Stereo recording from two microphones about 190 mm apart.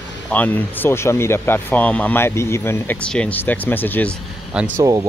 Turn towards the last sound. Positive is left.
turn(degrees=-15)  # may be behind; listen again after turning